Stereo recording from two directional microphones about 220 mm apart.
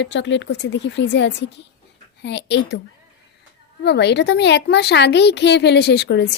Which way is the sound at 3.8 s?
50° left (ahead or behind).